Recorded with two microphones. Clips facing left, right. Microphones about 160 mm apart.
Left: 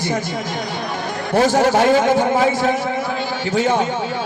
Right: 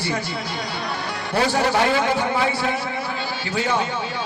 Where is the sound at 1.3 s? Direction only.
45° left (ahead or behind).